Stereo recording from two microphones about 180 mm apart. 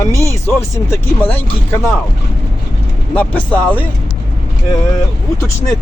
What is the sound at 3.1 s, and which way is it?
Speech, 10° left (ahead or behind).